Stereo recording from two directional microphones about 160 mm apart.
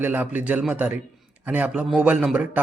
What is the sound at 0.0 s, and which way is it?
Speech, 10° right (ahead or behind).